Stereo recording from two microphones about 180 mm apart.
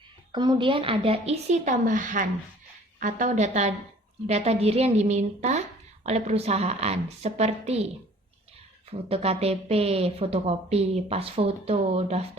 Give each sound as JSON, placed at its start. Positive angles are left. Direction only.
{"t": 0.3, "sound": "a woman's voice", "side_deg": -25}
{"t": 8.9, "sound": "a woman's voice", "side_deg": -35}